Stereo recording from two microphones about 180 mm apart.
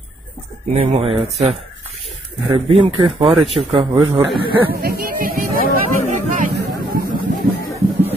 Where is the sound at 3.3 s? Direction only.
Centre (ahead or behind).